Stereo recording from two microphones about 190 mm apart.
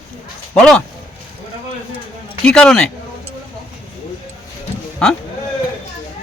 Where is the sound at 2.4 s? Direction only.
5° left (ahead or behind).